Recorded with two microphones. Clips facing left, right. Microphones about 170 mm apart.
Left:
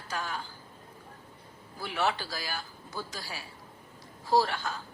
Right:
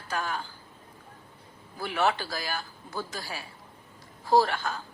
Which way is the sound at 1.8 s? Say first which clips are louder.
Right 3 dB; 55° right (ahead or behind).